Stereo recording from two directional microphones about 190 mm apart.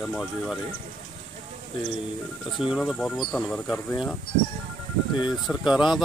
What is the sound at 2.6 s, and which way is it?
Speech, 5° right (ahead or behind).